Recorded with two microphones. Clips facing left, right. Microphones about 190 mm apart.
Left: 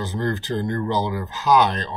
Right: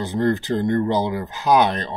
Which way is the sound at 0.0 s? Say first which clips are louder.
Right 5 dB; 15° right (ahead or behind).